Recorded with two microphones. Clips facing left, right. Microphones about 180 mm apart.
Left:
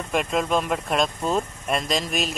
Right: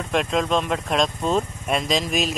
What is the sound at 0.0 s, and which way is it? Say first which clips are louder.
Speech: right 2 dB; 5° left (ahead or behind).